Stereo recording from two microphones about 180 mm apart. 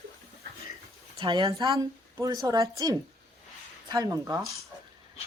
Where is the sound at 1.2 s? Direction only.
25° right (ahead or behind).